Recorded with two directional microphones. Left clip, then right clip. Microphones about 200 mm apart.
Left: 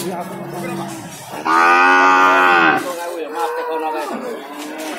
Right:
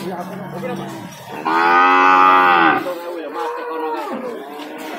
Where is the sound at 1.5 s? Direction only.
10° left (ahead or behind).